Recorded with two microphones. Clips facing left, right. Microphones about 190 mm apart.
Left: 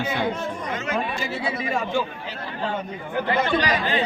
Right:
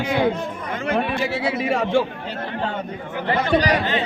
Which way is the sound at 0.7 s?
55° right (ahead or behind).